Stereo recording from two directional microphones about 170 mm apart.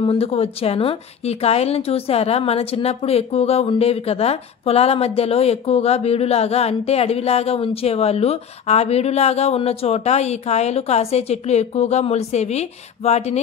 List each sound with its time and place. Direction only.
0.0 s a woman's voice: 35° left (ahead or behind)